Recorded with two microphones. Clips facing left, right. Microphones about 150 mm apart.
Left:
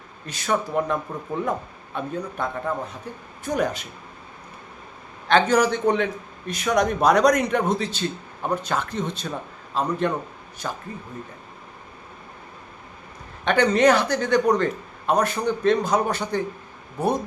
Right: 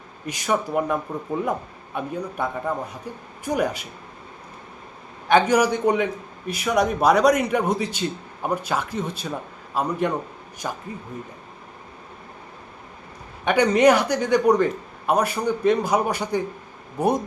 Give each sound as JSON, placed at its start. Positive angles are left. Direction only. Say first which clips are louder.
{"t": 0.3, "sound": "a man's voice", "louder": "right 1 dB", "side_deg": -15}
{"t": 5.3, "sound": "a man's voice", "louder": "right 1 dB", "side_deg": -10}
{"t": 13.4, "sound": "a man's voice", "louder": "right 1 dB", "side_deg": -10}